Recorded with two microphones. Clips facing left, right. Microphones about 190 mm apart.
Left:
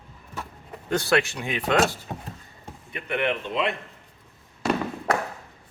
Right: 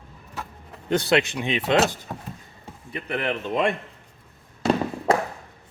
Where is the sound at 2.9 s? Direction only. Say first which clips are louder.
Left 1 dB; 35° right (ahead or behind).